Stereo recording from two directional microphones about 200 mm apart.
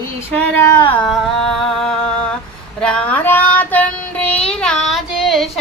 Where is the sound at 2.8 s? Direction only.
5° left (ahead or behind).